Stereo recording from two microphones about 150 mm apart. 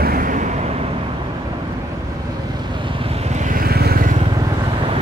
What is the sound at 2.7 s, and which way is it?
Vehicle, 35° right (ahead or behind).